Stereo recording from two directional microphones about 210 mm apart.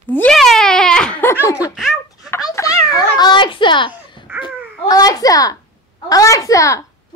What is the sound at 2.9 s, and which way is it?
A child's voice, 20° left (ahead or behind).